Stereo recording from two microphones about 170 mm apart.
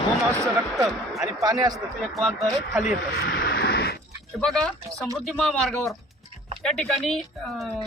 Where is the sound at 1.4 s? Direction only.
20° right (ahead or behind).